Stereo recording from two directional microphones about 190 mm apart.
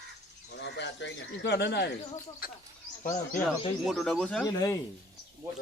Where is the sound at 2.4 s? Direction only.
50° left (ahead or behind).